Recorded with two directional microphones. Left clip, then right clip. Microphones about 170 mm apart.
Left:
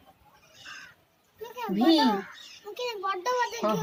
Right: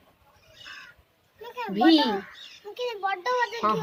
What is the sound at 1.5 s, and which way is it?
Speech, 30° right (ahead or behind).